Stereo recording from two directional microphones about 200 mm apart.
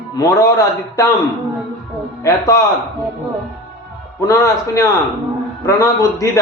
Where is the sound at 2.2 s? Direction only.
15° left (ahead or behind).